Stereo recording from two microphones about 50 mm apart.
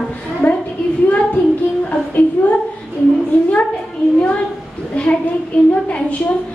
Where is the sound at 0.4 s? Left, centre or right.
Left.